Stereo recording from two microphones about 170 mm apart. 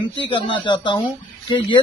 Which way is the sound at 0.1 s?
30° left (ahead or behind).